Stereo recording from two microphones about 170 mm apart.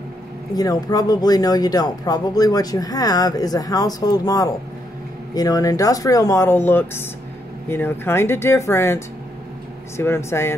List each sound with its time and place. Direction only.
0.6 s speech: 20° left (ahead or behind)